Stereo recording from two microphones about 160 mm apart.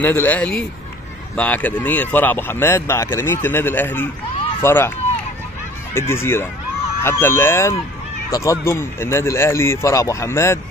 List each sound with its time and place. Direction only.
0.0 s speech: 10° left (ahead or behind)
5.9 s speech: 15° left (ahead or behind)